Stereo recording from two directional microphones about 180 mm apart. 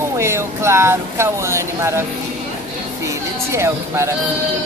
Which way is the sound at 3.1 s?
15° right (ahead or behind).